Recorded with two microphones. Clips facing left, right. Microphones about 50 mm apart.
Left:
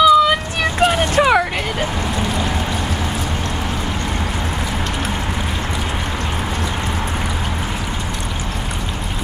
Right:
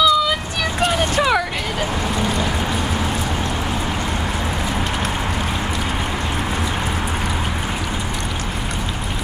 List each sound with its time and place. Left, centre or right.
0.0 s vehicle: left